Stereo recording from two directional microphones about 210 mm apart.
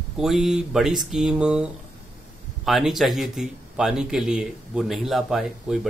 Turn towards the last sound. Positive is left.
turn(degrees=0)  # may be behind; listen again after turning